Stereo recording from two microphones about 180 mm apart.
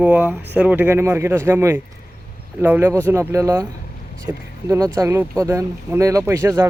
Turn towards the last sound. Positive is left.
turn(degrees=-15)  # may be behind; listen again after turning